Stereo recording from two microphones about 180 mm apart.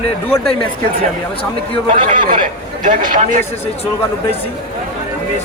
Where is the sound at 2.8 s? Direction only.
45° right (ahead or behind).